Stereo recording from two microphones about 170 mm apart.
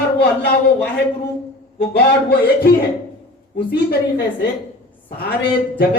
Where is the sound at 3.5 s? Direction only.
75° left (ahead or behind).